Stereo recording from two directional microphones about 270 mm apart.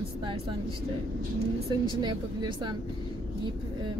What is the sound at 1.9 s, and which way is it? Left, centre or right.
Speech, centre.